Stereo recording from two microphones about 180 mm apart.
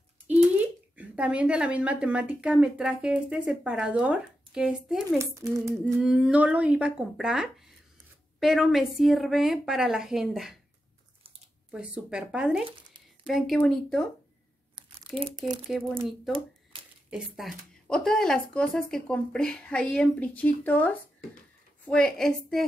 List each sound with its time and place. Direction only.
0.6 s speech: 10° right (ahead or behind)
5.2 s speech: 20° right (ahead or behind)
5.9 s speech: 5° right (ahead or behind)
11.7 s speech: 5° right (ahead or behind)
15.1 s speech: 30° right (ahead or behind)
15.6 s speech: centre (ahead or behind)
16.3 s a sound: 30° right (ahead or behind)
17.1 s speech: centre (ahead or behind)